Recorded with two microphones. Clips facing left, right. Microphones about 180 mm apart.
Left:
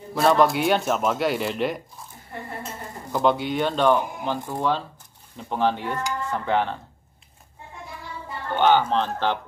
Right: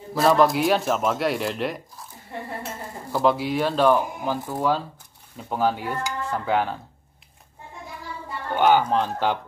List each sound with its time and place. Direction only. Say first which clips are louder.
0.1 s speech: even; centre (ahead or behind)
3.1 s speech: even; 5° right (ahead or behind)
5.5 s dishes: even; 5° right (ahead or behind)
8.5 s dishes: even; 10° right (ahead or behind)